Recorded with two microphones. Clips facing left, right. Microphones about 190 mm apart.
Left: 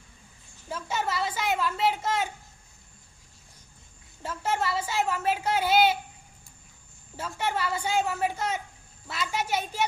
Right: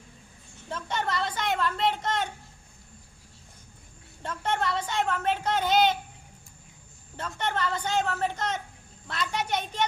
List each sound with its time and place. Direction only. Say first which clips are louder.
0.7 s a woman's voice: even; 5° left (ahead or behind)
4.2 s speech: even; 5° left (ahead or behind)
7.2 s speech: even; 5° left (ahead or behind)